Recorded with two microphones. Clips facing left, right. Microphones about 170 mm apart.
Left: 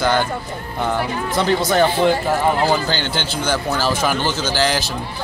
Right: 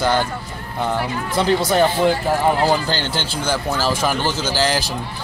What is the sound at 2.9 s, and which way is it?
Speech, 35° right (ahead or behind).